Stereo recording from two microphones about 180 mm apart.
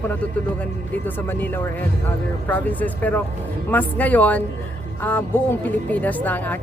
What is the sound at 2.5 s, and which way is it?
Speech, 10° left (ahead or behind).